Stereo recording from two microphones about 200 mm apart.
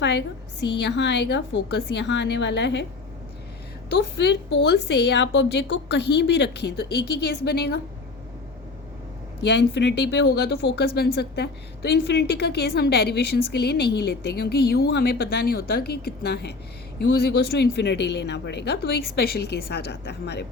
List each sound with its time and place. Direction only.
0.0 s speech: 60° left (ahead or behind)
3.9 s speech: 60° left (ahead or behind)
9.4 s speech: 60° left (ahead or behind)